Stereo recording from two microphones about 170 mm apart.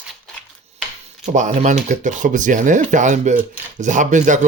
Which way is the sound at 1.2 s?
45° right (ahead or behind).